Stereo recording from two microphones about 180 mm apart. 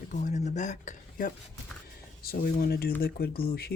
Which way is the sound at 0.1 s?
40° left (ahead or behind).